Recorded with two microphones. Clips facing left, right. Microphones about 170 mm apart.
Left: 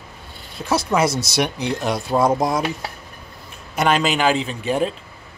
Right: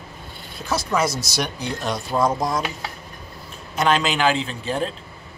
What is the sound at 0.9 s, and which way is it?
Speech, 5° left (ahead or behind).